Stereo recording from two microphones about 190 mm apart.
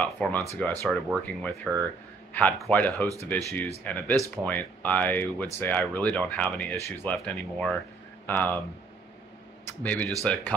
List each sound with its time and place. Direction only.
0.0 s speech: 5° left (ahead or behind)
9.8 s speech: 10° left (ahead or behind)